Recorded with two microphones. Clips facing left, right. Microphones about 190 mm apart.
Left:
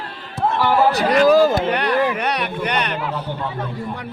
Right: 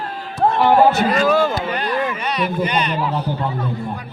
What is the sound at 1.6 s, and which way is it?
Speech, 70° left (ahead or behind).